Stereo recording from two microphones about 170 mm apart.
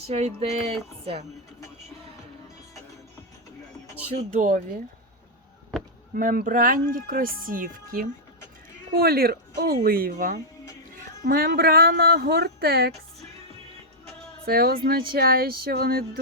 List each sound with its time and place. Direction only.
0.1 s music: 35° right (ahead or behind)
4.1 s speech: 45° right (ahead or behind)
5.7 s chop: centre (ahead or behind)
6.1 s speech: 55° right (ahead or behind)
11.2 s speech: 60° right (ahead or behind)
14.4 s speech: 65° right (ahead or behind)